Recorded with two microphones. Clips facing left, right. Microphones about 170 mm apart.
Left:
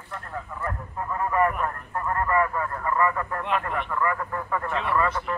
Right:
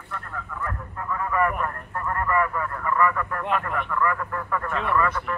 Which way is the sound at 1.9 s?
20° left (ahead or behind).